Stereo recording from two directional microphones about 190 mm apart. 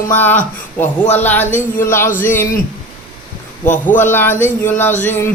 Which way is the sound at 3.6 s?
40° left (ahead or behind).